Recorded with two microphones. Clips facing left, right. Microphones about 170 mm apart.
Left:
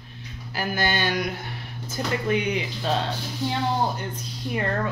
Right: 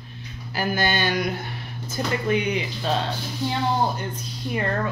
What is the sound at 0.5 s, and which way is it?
Speech, 30° right (ahead or behind).